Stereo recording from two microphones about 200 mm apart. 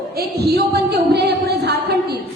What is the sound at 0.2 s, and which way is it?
A woman's voice, 55° right (ahead or behind).